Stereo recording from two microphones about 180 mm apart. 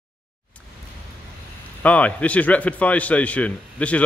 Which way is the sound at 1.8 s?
5° left (ahead or behind).